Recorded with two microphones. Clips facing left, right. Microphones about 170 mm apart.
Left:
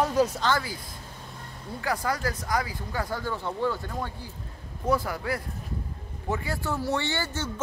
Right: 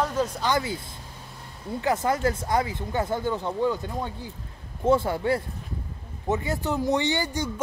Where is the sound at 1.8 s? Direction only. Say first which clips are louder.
Right 5 dB; 25° right (ahead or behind).